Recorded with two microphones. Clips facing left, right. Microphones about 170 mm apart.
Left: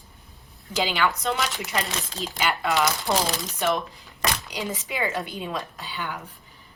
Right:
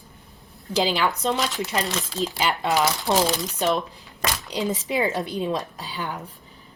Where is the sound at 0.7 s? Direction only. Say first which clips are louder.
Right 2 dB; 35° right (ahead or behind).